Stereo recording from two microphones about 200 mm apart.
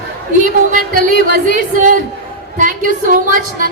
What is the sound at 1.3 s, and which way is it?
A woman's voice, 40° right (ahead or behind).